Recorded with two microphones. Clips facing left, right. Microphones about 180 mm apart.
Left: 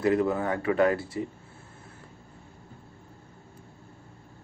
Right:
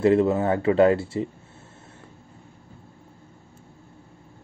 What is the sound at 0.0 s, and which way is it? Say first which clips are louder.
A man's voice: right 5 dB; 25° right (ahead or behind).